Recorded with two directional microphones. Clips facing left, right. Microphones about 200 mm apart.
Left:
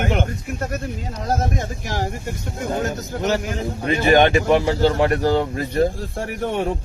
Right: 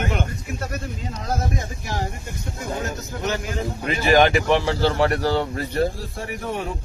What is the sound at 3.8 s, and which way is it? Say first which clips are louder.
Speech: left 2 dB; 30° left (ahead or behind).